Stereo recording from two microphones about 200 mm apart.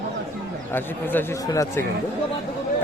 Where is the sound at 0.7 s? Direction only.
10° left (ahead or behind).